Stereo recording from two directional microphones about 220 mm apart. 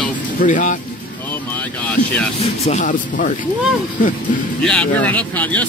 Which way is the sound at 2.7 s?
35° left (ahead or behind).